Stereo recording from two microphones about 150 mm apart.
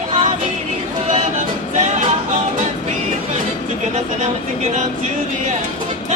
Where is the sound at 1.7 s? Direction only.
50° right (ahead or behind).